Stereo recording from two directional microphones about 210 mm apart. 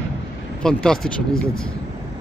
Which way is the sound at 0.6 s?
5° left (ahead or behind).